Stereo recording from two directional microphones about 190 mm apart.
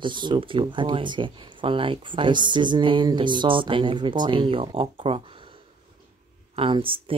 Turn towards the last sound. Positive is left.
turn(degrees=-30)  # may be behind; listen again after turning